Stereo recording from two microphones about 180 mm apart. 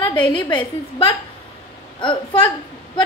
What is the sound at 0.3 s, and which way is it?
A woman's voice, 25° left (ahead or behind).